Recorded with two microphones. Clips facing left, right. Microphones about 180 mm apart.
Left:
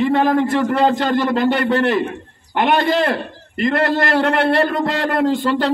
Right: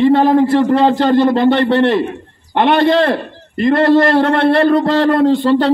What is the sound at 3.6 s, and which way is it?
A man's voice, 30° right (ahead or behind).